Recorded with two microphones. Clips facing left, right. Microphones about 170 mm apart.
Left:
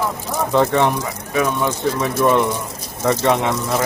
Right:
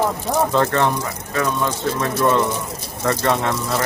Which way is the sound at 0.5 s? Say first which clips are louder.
Left 7 dB; 15° left (ahead or behind).